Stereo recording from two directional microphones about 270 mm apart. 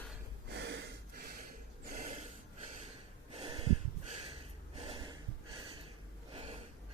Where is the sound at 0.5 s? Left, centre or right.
Right.